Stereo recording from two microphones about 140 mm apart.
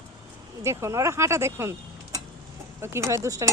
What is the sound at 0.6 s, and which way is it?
Speech, 20° right (ahead or behind).